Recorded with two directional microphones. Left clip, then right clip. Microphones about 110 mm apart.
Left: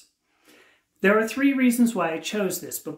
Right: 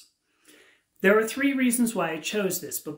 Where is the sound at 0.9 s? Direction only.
20° left (ahead or behind).